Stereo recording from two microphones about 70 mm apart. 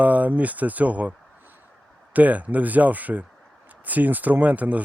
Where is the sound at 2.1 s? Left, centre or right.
Right.